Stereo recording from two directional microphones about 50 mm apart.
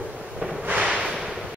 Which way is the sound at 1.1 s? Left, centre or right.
Centre.